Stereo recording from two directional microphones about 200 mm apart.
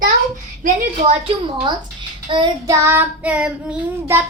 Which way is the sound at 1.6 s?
25° right (ahead or behind).